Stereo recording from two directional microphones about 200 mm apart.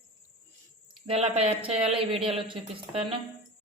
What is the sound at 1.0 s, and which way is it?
Speech, 30° right (ahead or behind).